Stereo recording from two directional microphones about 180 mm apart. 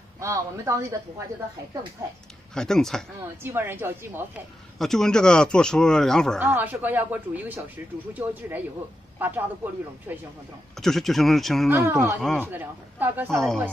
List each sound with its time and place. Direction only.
0.2 s speech: 15° right (ahead or behind)
2.5 s speech: 5° left (ahead or behind)
3.4 s speech: 10° right (ahead or behind)
4.7 s speech: centre (ahead or behind)
6.4 s speech: 10° right (ahead or behind)
10.8 s speech: centre (ahead or behind)
11.7 s speech: 15° right (ahead or behind)
12.2 s speech: 5° left (ahead or behind)
12.4 s speech: 10° right (ahead or behind)